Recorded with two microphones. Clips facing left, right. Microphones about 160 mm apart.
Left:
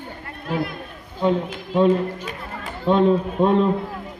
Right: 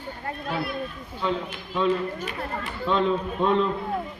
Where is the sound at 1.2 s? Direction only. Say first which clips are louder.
Left 7 dB; 50° left (ahead or behind).